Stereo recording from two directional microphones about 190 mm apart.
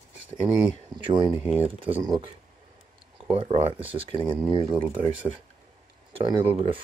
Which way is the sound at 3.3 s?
30° right (ahead or behind).